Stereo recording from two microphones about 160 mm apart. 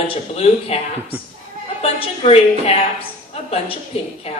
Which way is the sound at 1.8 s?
40° left (ahead or behind).